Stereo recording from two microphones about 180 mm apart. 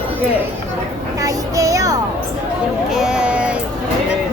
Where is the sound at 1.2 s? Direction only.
20° right (ahead or behind).